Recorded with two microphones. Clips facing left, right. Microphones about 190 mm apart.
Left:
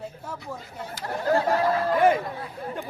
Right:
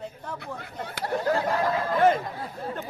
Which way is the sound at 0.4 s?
65° right (ahead or behind).